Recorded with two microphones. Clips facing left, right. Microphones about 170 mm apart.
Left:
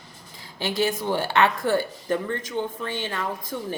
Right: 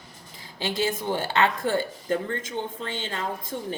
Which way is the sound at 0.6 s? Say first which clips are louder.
Left 2 dB; 25° right (ahead or behind).